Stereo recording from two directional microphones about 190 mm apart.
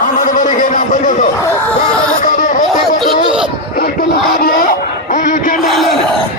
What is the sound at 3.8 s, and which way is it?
Speech, 50° left (ahead or behind).